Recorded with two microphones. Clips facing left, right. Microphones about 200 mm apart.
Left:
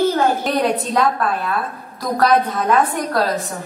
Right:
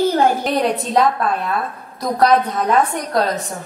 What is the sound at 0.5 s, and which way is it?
Speech, centre (ahead or behind).